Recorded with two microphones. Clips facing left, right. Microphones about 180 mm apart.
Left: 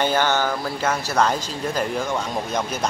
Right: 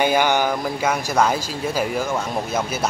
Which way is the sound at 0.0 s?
10° right (ahead or behind).